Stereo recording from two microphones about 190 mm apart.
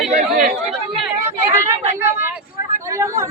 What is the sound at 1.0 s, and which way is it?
Chatter, 10° right (ahead or behind).